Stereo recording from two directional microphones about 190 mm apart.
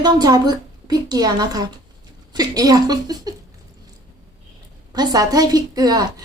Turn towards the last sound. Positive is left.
turn(degrees=-20)  # may be behind; listen again after turning